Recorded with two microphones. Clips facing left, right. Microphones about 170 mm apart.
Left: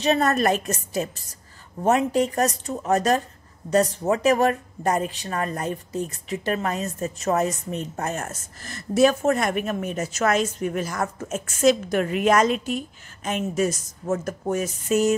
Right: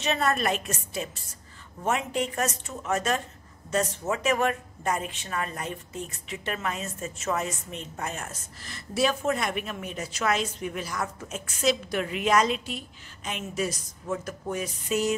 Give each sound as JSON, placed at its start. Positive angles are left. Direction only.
{"t": 0.0, "sound": "a woman's voice", "side_deg": 40}